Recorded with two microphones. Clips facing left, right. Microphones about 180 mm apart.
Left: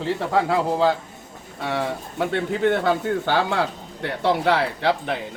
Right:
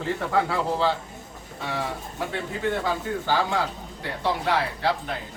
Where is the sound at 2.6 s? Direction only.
70° left (ahead or behind).